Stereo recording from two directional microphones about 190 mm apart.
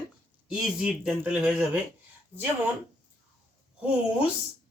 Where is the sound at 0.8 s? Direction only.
5° right (ahead or behind).